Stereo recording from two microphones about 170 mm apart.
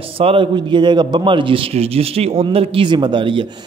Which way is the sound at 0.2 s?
30° right (ahead or behind).